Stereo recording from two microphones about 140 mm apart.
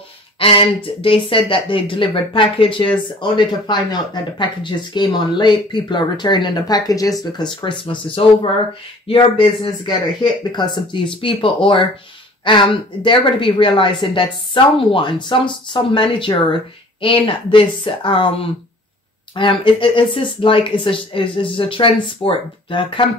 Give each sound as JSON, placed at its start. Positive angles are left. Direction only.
{"t": 0.4, "sound": "speech", "side_deg": 40}
{"t": 7.6, "sound": "speech", "side_deg": 35}